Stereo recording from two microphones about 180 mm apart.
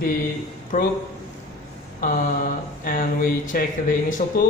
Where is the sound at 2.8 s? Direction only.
55° left (ahead or behind).